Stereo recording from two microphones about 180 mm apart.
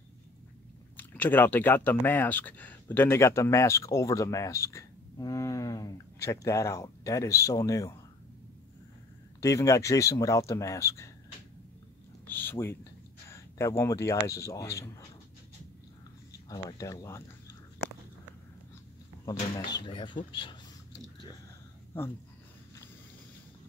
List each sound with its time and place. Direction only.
0.9 s speech: 10° left (ahead or behind)
9.4 s speech: 20° left (ahead or behind)
12.3 s speech: 10° left (ahead or behind)
16.4 s speech: 20° left (ahead or behind)
19.7 s speech: 25° left (ahead or behind)